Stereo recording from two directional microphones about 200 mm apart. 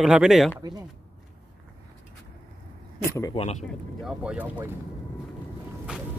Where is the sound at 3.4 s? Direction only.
35° left (ahead or behind).